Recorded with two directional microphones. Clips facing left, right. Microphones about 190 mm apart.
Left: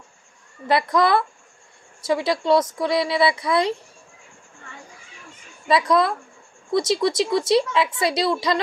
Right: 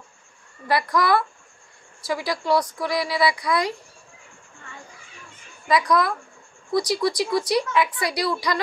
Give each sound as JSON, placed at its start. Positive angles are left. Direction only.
{"t": 0.7, "sound": "a woman's voice", "side_deg": 25}
{"t": 5.7, "sound": "a woman's voice", "side_deg": 25}